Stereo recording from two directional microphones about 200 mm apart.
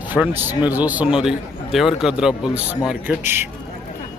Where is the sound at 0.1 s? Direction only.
10° right (ahead or behind).